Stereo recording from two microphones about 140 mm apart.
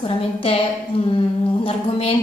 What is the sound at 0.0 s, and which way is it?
A woman's voice, 40° left (ahead or behind).